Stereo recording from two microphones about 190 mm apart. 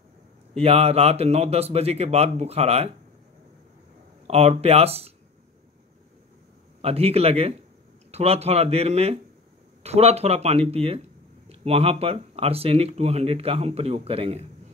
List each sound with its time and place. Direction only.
0.6 s speech: 30° right (ahead or behind)
4.3 s speech: 35° right (ahead or behind)
6.8 s speech: 30° right (ahead or behind)